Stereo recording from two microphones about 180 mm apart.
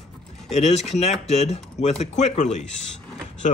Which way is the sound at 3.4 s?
45° left (ahead or behind).